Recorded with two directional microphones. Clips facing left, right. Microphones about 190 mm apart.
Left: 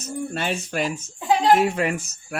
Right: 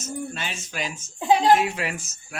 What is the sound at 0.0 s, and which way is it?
Speech, 60° left (ahead or behind).